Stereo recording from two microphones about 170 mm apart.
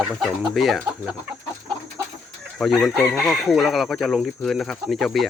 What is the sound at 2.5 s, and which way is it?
Speech, centre (ahead or behind).